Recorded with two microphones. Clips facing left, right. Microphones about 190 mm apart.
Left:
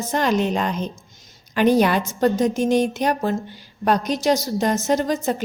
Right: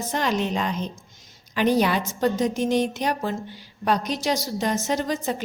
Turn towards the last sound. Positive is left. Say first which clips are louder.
# left 5 dB
turn(degrees=45)  # may be behind; listen again after turning